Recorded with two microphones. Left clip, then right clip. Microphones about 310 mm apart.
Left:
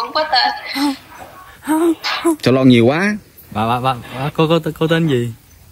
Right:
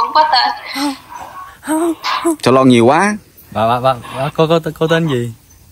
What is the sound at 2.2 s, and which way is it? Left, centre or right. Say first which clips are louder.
Speech: right 3 dB; centre.